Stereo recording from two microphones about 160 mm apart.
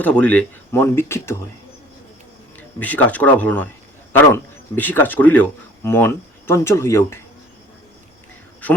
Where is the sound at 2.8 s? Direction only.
10° left (ahead or behind).